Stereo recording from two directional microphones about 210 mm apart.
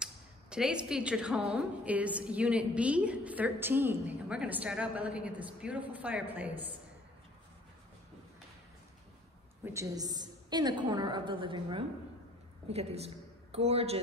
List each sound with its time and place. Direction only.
0.0 s a woman's voice: 5° right (ahead or behind)
9.7 s a woman's voice: 15° right (ahead or behind)